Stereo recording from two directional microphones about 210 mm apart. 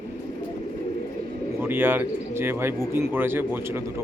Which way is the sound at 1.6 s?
10° right (ahead or behind).